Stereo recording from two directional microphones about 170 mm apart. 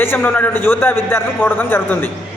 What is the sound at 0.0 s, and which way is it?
A man's voice, 15° left (ahead or behind).